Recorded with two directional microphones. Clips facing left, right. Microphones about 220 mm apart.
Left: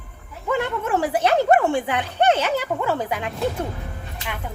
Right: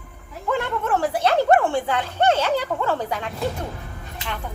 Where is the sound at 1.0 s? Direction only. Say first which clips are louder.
Left 2 dB; 15° left (ahead or behind).